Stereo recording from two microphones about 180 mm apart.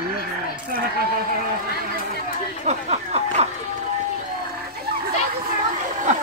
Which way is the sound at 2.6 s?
35° right (ahead or behind).